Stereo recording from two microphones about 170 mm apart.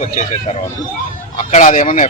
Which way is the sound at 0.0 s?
50° left (ahead or behind).